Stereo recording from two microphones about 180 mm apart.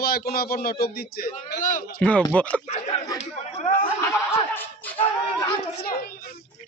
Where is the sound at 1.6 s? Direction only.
45° left (ahead or behind).